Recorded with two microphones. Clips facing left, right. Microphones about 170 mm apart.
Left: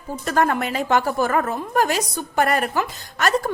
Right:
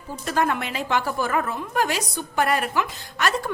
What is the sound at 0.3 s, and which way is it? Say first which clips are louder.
A woman's voice: left 3 dB; 45° left (ahead or behind).